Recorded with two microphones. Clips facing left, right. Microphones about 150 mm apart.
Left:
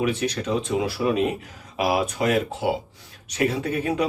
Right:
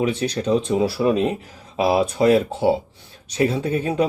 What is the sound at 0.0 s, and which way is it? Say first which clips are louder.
Speech: right 3 dB; 30° right (ahead or behind).